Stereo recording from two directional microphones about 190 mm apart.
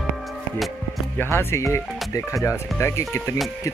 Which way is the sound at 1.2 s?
10° left (ahead or behind).